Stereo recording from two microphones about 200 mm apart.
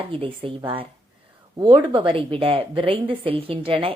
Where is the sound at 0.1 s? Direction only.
25° right (ahead or behind).